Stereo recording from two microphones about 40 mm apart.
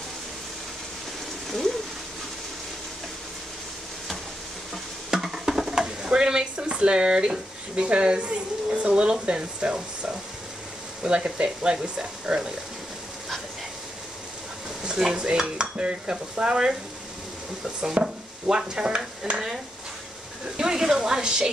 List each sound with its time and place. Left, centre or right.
5.1 s stir: centre
6.5 s speech: right
11.1 s stir: right
14.8 s stir: centre
18.5 s a woman's voice: centre
18.8 s stir: right
20.5 s a woman's voice: centre